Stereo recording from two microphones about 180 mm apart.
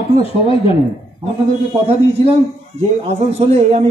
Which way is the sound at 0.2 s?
30° left (ahead or behind).